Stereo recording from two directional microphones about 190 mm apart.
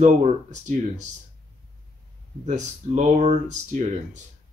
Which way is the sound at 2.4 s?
35° right (ahead or behind).